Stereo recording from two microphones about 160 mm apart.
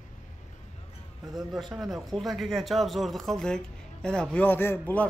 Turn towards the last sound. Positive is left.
turn(degrees=10)  # may be behind; listen again after turning